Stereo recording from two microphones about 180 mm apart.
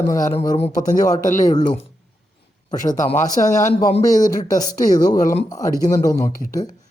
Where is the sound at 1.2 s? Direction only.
45° left (ahead or behind).